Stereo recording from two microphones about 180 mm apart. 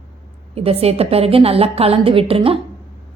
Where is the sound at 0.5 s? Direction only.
35° right (ahead or behind).